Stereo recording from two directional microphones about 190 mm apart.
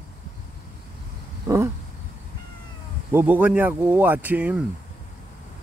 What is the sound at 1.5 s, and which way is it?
Speech, 15° right (ahead or behind).